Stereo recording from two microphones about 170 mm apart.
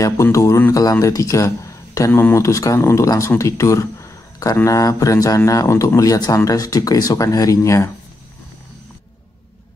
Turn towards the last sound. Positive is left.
turn(degrees=15)  # may be behind; listen again after turning